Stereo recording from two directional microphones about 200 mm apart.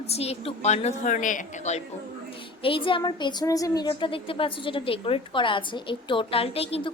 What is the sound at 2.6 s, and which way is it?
A woman's voice, 25° left (ahead or behind).